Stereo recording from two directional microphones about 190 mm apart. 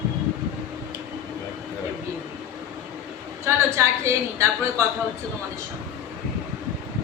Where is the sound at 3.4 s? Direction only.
15° right (ahead or behind).